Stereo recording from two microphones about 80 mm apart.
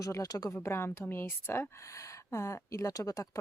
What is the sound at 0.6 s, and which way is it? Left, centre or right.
Speech, left.